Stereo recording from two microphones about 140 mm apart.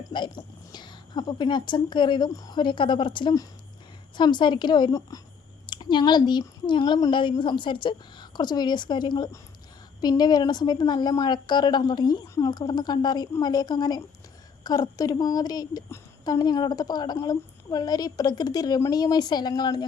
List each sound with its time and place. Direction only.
0.1 s a woman's voice: 35° left (ahead or behind)